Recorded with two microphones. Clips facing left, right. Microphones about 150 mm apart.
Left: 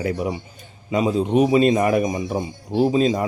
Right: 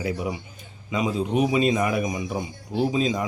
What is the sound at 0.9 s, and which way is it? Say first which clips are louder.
Speech: left 5 dB; 40° left (ahead or behind).